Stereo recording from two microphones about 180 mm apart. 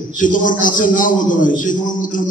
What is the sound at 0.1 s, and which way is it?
A man's voice, 50° left (ahead or behind).